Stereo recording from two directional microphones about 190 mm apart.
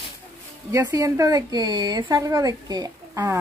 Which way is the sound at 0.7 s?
15° right (ahead or behind).